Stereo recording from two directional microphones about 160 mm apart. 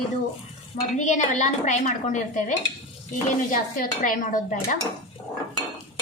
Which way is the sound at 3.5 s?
60° left (ahead or behind).